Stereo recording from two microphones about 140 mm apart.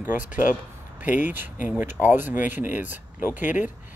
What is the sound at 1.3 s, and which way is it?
Speech, 15° right (ahead or behind).